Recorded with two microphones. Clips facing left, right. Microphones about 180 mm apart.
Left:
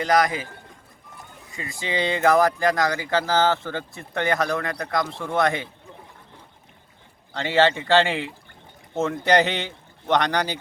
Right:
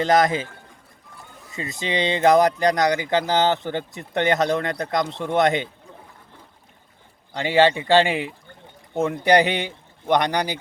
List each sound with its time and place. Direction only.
0.0 s speech: 25° right (ahead or behind)
1.5 s speech: 20° right (ahead or behind)
7.3 s speech: 15° right (ahead or behind)